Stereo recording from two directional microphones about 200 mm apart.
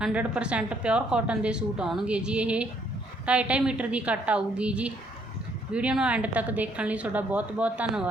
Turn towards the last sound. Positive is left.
turn(degrees=-5)  # may be behind; listen again after turning